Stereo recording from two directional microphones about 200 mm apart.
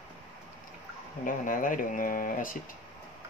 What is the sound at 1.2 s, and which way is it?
Speech, 45° left (ahead or behind).